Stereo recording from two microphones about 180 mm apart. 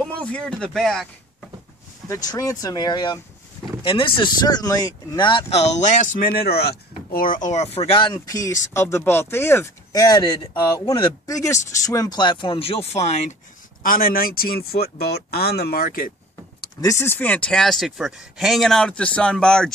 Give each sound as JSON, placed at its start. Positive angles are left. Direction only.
{"t": 0.0, "sound": "speech", "side_deg": 5}
{"t": 2.0, "sound": "speech", "side_deg": 20}
{"t": 6.2, "sound": "speech", "side_deg": 60}
{"t": 13.8, "sound": "speech", "side_deg": 55}
{"t": 17.0, "sound": "speech", "side_deg": 10}